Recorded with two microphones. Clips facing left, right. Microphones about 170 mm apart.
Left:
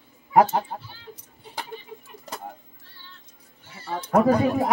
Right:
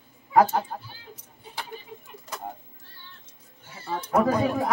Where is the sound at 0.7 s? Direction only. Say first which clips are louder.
Left 1 dB; 20° left (ahead or behind).